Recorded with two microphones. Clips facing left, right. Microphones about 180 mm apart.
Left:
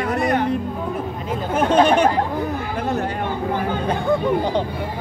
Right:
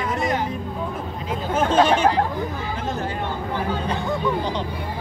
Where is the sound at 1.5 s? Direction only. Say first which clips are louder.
Left 3 dB; 60° left (ahead or behind).